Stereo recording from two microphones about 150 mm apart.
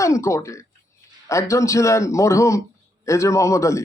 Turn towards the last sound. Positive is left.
turn(degrees=20)  # may be behind; listen again after turning